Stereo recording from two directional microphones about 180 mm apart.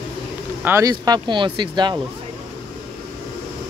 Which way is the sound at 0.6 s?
15° right (ahead or behind).